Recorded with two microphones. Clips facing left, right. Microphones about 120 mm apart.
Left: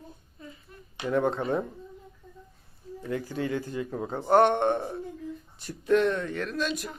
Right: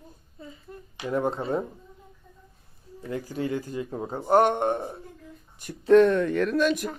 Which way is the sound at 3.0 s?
40° right (ahead or behind).